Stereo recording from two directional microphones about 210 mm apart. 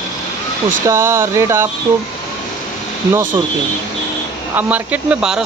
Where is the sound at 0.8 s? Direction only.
15° right (ahead or behind).